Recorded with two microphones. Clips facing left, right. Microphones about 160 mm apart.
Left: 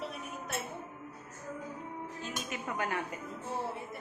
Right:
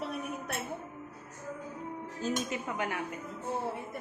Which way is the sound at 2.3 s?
20° right (ahead or behind).